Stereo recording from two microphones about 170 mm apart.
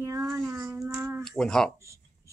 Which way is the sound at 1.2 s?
5° left (ahead or behind).